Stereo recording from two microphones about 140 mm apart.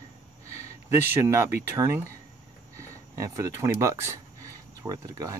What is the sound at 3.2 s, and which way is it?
Speech, 25° right (ahead or behind).